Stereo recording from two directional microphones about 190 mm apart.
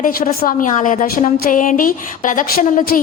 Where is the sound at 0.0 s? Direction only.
50° left (ahead or behind).